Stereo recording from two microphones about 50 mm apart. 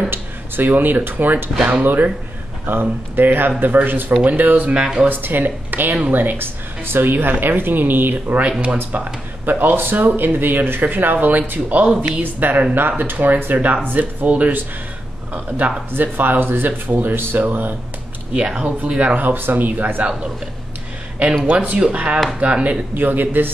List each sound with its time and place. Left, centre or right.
0.1 s speech: right
1.5 s speech: centre
1.8 s speech: right
18.3 s speech: centre
18.9 s speech: right
20.0 s speech: right
21.5 s speech: right
22.9 s speech: right